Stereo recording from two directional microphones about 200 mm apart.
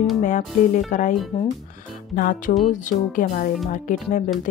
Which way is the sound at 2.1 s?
45° left (ahead or behind).